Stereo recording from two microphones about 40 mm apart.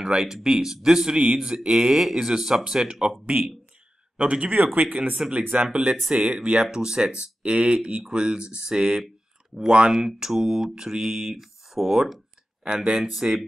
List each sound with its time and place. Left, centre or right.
0.1 s speech: centre
3.3 s speech: right
5.7 s speech: right
6.6 s speech: centre